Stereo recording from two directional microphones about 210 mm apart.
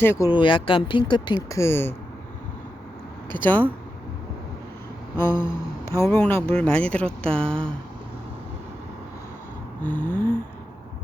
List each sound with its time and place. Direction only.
0.0 s speech: 15° left (ahead or behind)
3.3 s speech: 10° left (ahead or behind)
5.1 s speech: 10° left (ahead or behind)
9.8 s gasp: 10° left (ahead or behind)